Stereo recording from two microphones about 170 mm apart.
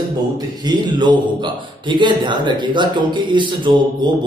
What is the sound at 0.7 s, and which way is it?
A man's voice, 25° right (ahead or behind).